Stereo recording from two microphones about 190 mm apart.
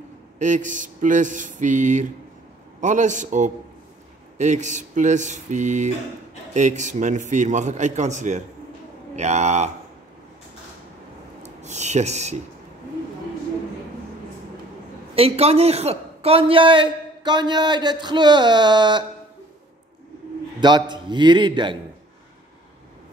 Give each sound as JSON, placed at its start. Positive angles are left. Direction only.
{"t": 0.4, "sound": "a man's voice", "side_deg": -40}
{"t": 11.4, "sound": "a sound", "side_deg": -35}
{"t": 15.1, "sound": "a man's voice", "side_deg": -30}
{"t": 20.9, "sound": "a man's voice", "side_deg": -25}